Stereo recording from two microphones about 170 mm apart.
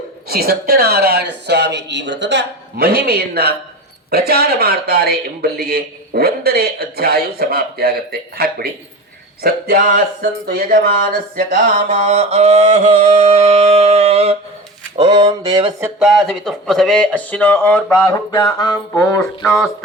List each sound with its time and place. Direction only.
0.3 s a man's voice: 65° right (ahead or behind)
11.9 s mantra: 40° right (ahead or behind)
13.1 s music: 35° right (ahead or behind)
14.9 s speech: 30° right (ahead or behind)
15.8 s speech: 5° right (ahead or behind)
18.0 s mantra: 20° left (ahead or behind)
19.2 s speech: centre (ahead or behind)